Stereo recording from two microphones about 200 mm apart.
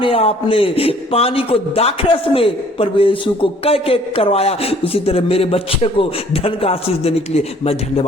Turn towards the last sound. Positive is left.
turn(degrees=30)  # may be behind; listen again after turning